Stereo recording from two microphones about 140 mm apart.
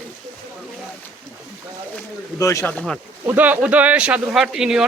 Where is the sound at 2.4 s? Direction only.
20° left (ahead or behind).